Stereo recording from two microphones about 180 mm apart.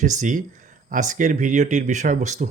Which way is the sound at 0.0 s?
45° right (ahead or behind).